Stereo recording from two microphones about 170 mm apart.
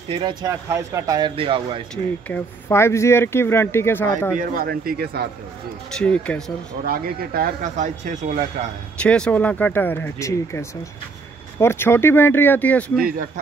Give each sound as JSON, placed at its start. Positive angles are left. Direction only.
{"t": 0.1, "sound": "speech", "side_deg": -25}
{"t": 1.3, "sound": "speech", "side_deg": -30}
{"t": 2.2, "sound": "speech", "side_deg": 10}
{"t": 4.4, "sound": "speech", "side_deg": -60}
{"t": 5.9, "sound": "speech", "side_deg": 5}
{"t": 6.8, "sound": "speech", "side_deg": -60}
{"t": 9.0, "sound": "speech", "side_deg": 5}
{"t": 11.6, "sound": "speech", "side_deg": 15}